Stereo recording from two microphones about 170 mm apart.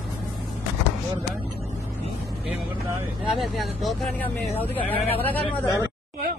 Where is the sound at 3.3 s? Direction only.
Centre (ahead or behind).